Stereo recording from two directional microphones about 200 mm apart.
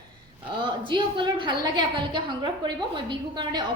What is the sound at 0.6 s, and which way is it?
A woman's voice, 25° right (ahead or behind).